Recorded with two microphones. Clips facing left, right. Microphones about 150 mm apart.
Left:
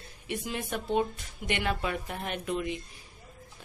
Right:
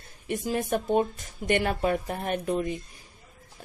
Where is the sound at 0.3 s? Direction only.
45° right (ahead or behind).